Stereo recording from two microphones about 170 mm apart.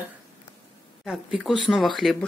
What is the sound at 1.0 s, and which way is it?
Speech, centre (ahead or behind).